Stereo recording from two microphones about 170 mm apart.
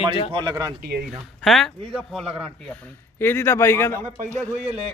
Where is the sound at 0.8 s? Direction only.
70° right (ahead or behind).